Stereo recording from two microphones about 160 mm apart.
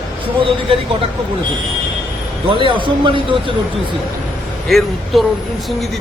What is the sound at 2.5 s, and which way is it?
Speech, 35° right (ahead or behind).